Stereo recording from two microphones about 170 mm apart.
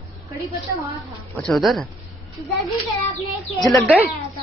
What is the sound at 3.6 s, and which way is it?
Speech, centre (ahead or behind).